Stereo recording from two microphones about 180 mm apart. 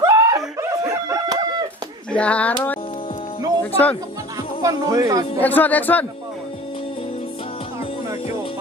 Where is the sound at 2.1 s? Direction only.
5° left (ahead or behind).